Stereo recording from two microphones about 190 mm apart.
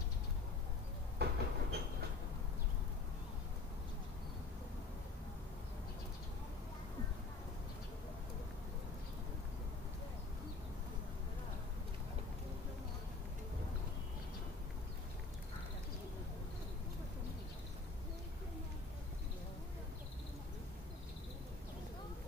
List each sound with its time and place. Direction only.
1.1 s train: 60° right (ahead or behind)